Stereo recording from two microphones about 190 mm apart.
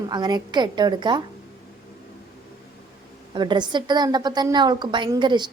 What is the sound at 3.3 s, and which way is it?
A woman's voice, 25° right (ahead or behind).